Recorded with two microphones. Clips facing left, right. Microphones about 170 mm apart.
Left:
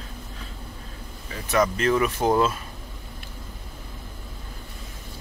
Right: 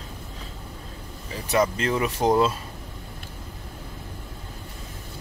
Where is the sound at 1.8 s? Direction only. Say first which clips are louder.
Left 2 dB; 25° right (ahead or behind).